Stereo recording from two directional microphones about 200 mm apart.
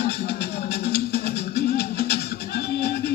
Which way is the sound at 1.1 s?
55° left (ahead or behind).